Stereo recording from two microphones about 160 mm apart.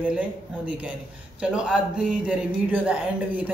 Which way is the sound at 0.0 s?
10° right (ahead or behind).